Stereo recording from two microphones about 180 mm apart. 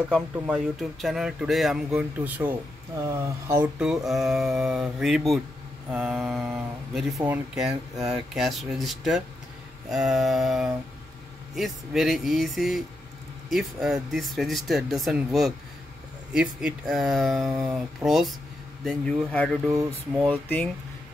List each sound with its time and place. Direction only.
0.5 s speech: 5° right (ahead or behind)
3.7 s speech: 5° right (ahead or behind)